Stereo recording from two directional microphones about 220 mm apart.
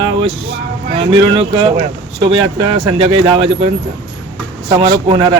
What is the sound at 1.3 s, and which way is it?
Speech, 20° right (ahead or behind).